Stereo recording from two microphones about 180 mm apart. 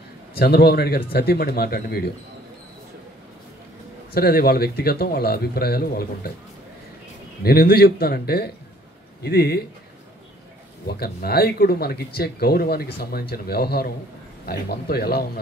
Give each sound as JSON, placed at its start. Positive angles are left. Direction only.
{"t": 0.4, "sound": "speech", "side_deg": 60}
{"t": 4.1, "sound": "speech", "side_deg": 60}
{"t": 7.4, "sound": "speech", "side_deg": 60}
{"t": 10.9, "sound": "speech", "side_deg": 60}